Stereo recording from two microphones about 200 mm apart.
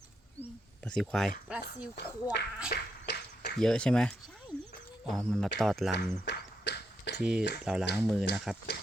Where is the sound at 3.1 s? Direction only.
55° left (ahead or behind).